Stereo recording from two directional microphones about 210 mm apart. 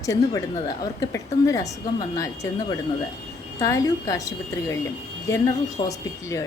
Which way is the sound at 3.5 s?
15° left (ahead or behind).